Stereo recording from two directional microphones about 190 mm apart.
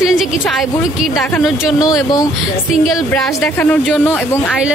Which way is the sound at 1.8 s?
20° left (ahead or behind).